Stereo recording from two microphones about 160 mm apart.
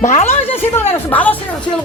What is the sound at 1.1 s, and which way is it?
Speech, 10° left (ahead or behind).